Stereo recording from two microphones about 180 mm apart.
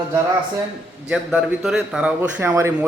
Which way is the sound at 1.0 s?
5° right (ahead or behind).